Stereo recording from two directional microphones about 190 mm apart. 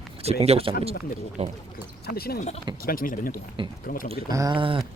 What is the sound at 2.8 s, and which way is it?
Speech, 50° left (ahead or behind).